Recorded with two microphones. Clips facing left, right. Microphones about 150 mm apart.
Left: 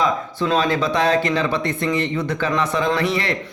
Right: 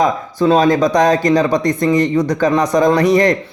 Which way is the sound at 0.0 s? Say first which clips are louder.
Right 6 dB; 40° right (ahead or behind).